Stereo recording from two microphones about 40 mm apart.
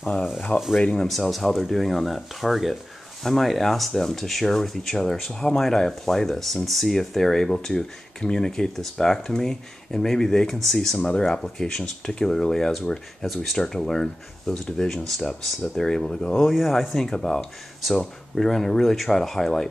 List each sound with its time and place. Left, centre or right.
0.0 s speech: left
0.7 s speech: centre
1.0 s speech: centre
11.0 s speech: left
16.3 s speech: centre
17.0 s speech: centre